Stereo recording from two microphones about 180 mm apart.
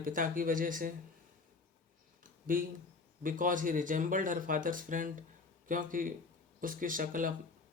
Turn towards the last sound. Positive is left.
turn(degrees=-50)  # may be behind; listen again after turning